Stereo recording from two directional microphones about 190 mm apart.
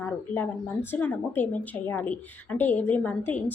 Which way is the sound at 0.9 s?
10° left (ahead or behind).